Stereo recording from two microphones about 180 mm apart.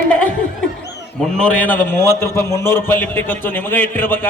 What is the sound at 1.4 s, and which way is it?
A man's voice, 10° left (ahead or behind).